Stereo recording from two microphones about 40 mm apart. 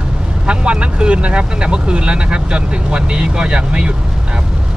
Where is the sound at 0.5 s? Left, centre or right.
Right.